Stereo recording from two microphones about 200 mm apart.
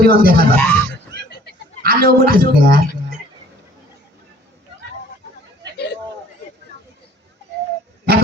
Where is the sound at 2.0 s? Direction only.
50° right (ahead or behind).